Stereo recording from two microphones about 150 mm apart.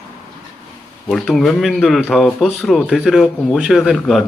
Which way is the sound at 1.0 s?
Centre (ahead or behind).